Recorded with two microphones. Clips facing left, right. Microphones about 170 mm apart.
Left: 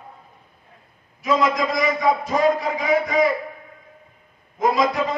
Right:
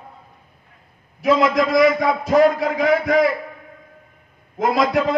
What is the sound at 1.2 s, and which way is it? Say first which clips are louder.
A man's voice: right 4 dB; 65° right (ahead or behind).